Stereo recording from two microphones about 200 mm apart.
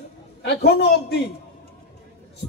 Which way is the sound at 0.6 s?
55° left (ahead or behind).